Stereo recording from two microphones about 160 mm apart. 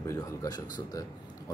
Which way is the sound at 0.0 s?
20° left (ahead or behind).